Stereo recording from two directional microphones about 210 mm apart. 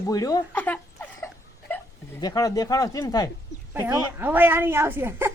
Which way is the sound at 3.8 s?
10° right (ahead or behind).